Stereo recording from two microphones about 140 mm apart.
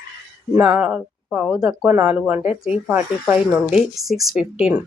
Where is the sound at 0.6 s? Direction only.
10° right (ahead or behind).